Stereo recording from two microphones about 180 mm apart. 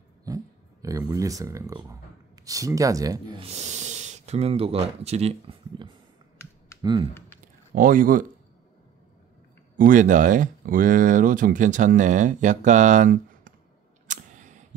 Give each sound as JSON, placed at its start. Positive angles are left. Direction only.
{"t": 0.3, "sound": "a sound", "side_deg": -20}
{"t": 0.8, "sound": "speech", "side_deg": -20}
{"t": 3.4, "sound": "speech", "side_deg": -40}
{"t": 7.7, "sound": "speech", "side_deg": -50}
{"t": 9.8, "sound": "speech", "side_deg": -45}
{"t": 14.0, "sound": "a sound", "side_deg": -45}